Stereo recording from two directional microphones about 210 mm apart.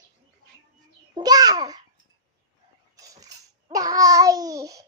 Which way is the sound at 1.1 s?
20° right (ahead or behind).